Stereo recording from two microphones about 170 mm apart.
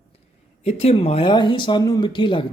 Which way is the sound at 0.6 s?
35° left (ahead or behind).